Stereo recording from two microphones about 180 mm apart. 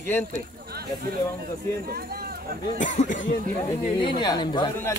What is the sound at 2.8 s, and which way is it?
Speech, 45° left (ahead or behind).